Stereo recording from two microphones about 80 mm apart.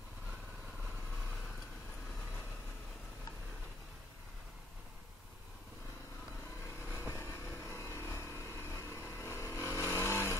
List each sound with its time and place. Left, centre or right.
6.9 s vehicle: left